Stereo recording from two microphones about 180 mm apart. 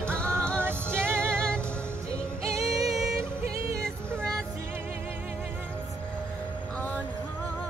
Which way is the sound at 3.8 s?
5° left (ahead or behind).